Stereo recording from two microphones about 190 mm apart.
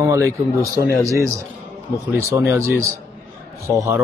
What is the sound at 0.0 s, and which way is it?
Speech, 15° right (ahead or behind).